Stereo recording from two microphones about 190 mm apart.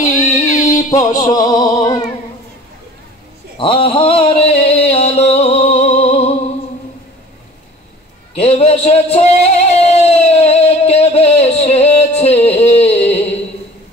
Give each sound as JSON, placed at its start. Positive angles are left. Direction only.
{"t": 0.0, "sound": "music", "side_deg": 35}
{"t": 0.8, "sound": "music", "side_deg": 20}
{"t": 3.5, "sound": "a sound", "side_deg": 30}
{"t": 8.4, "sound": "music", "side_deg": 30}